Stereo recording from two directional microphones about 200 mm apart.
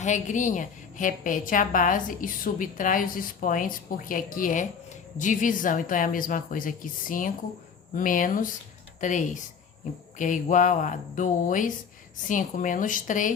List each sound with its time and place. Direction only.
0.0 s a woman's voice: 35° left (ahead or behind)